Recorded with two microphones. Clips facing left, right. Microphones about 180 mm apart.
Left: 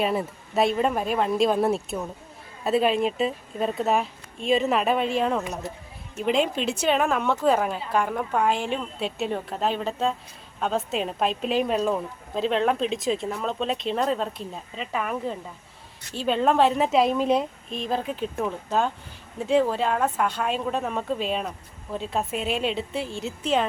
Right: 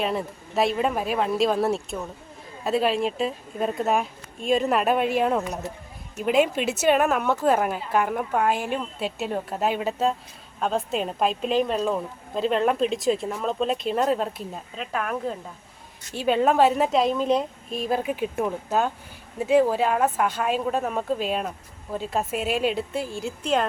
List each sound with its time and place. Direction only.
0.0 s a woman's voice: centre (ahead or behind)